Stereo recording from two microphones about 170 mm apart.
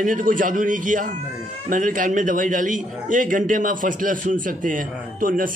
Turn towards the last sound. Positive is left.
turn(degrees=-55)  # may be behind; listen again after turning